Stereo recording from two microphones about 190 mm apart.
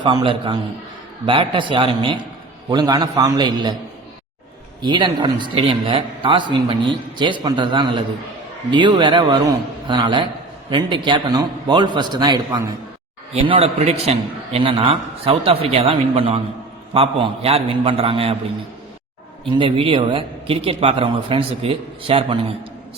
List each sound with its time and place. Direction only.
0.0 s a man's voice: 25° right (ahead or behind)
4.8 s a man's voice: 25° right (ahead or behind)
13.3 s a man's voice: 35° right (ahead or behind)
19.5 s a man's voice: 25° right (ahead or behind)